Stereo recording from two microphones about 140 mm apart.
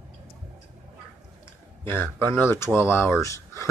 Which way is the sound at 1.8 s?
15° left (ahead or behind).